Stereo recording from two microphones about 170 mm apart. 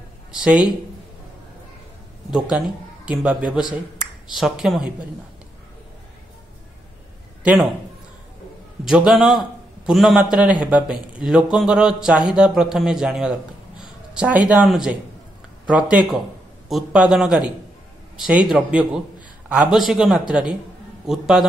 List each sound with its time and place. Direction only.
0.3 s speech: 5° right (ahead or behind)
2.3 s a man's voice: 5° right (ahead or behind)
8.8 s a man's voice: 5° right (ahead or behind)